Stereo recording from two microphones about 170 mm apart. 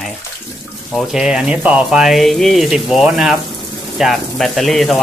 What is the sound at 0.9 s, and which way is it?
Speech, centre (ahead or behind).